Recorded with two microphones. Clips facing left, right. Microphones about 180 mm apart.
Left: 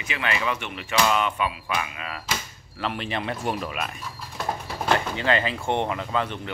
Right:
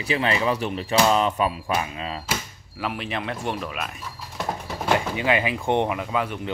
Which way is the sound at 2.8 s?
5° right (ahead or behind).